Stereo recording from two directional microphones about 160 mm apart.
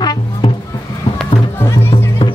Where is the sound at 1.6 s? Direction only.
15° left (ahead or behind).